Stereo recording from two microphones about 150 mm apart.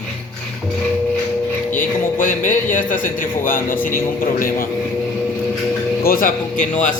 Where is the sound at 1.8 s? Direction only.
60° left (ahead or behind).